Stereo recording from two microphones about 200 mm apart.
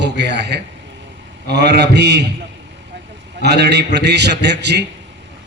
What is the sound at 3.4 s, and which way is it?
A man's voice, 55° right (ahead or behind).